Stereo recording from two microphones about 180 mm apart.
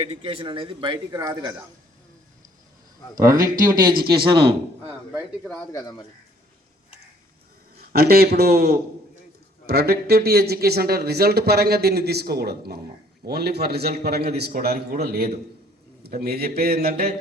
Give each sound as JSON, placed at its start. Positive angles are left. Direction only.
{"t": 0.0, "sound": "a man's voice", "side_deg": -35}
{"t": 3.7, "sound": "a man's voice", "side_deg": -25}
{"t": 5.7, "sound": "speech", "side_deg": 20}
{"t": 7.9, "sound": "speech", "side_deg": -55}